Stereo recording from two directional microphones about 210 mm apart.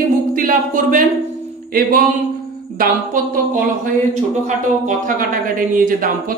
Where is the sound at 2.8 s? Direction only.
45° right (ahead or behind).